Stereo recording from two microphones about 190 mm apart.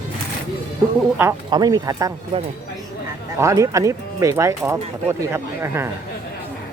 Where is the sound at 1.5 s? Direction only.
20° right (ahead or behind).